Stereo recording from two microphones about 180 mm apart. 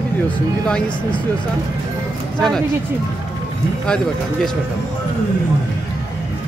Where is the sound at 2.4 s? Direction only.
5° left (ahead or behind).